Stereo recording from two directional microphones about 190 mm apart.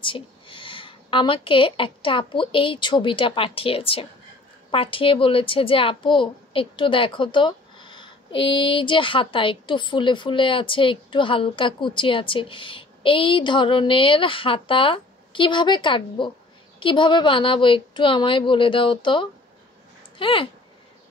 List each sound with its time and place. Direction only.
0.0 s a woman's voice: 25° left (ahead or behind)